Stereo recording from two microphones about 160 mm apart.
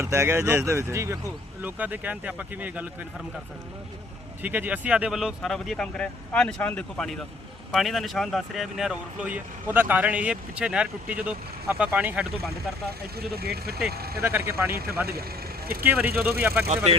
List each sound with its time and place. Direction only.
0.0 s speech: 20° right (ahead or behind)
4.4 s speech: 10° right (ahead or behind)
13.1 s speech: 75° right (ahead or behind)
14.2 s speech: 15° right (ahead or behind)
14.7 s speech: 75° right (ahead or behind)
15.8 s speech: 10° right (ahead or behind)
16.6 s speech: 40° right (ahead or behind)